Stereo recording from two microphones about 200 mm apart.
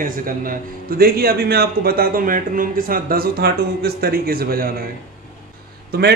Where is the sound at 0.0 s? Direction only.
45° right (ahead or behind).